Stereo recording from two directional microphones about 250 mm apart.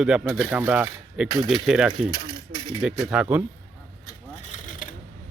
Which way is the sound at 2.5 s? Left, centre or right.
Centre.